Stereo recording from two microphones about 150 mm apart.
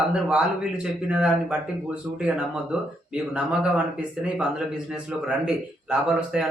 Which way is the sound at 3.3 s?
5° right (ahead or behind).